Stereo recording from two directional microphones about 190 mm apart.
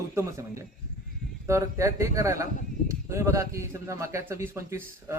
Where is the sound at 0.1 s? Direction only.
15° right (ahead or behind).